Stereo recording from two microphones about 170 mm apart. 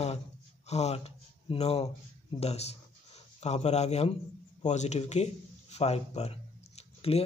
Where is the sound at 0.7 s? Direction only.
40° left (ahead or behind).